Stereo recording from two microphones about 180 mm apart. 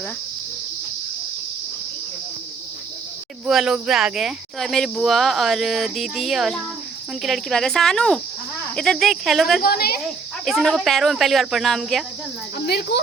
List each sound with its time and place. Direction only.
3.4 s speech: 5° right (ahead or behind)
9.6 s a woman's voice: 55° left (ahead or behind)
10.4 s speech: centre (ahead or behind)
12.5 s a woman's voice: 60° left (ahead or behind)